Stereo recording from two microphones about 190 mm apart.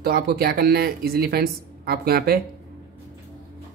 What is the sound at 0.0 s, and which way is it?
Speech, 55° right (ahead or behind).